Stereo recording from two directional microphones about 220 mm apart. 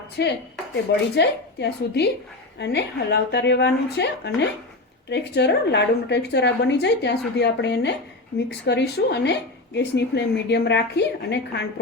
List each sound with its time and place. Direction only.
0.2 s speech: 50° left (ahead or behind)